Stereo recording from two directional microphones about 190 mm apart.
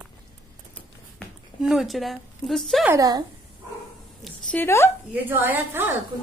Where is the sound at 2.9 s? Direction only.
20° right (ahead or behind).